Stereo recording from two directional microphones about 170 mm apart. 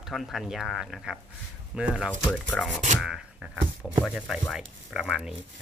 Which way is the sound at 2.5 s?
5° left (ahead or behind).